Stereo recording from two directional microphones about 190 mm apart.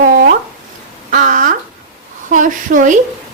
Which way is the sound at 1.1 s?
40° right (ahead or behind).